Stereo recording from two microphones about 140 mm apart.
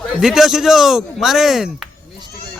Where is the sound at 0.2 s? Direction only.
5° right (ahead or behind).